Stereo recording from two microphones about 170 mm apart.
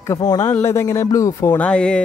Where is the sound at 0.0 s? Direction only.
20° left (ahead or behind).